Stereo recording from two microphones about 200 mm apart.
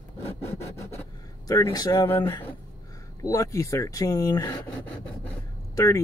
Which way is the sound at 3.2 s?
15° left (ahead or behind).